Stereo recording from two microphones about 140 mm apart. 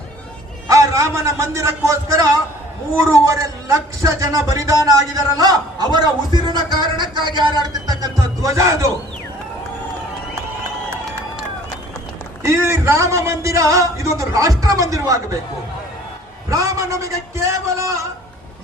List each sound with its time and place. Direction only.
0.7 s speech: 20° right (ahead or behind)
12.5 s speech: 20° right (ahead or behind)
16.5 s a man's voice: 25° right (ahead or behind)